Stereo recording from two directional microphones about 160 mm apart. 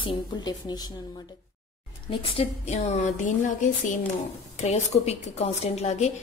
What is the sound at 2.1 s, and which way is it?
A woman's voice, 35° left (ahead or behind).